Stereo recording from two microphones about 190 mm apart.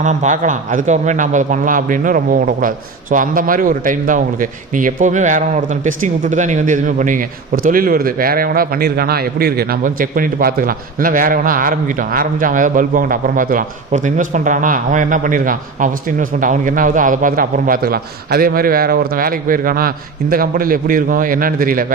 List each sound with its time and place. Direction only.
0.0 s a man's voice: 40° right (ahead or behind)